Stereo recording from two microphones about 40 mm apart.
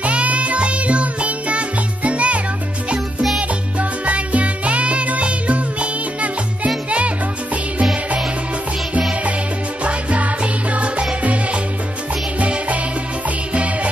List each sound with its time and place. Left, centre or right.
0.0 s music: right
4.0 s music: right
9.8 s music: right